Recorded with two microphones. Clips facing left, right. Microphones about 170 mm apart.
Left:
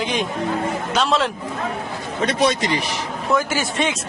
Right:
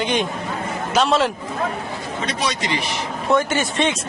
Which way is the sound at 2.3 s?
55° left (ahead or behind).